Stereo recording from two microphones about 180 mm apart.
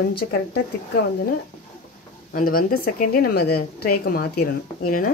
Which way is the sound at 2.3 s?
50° left (ahead or behind).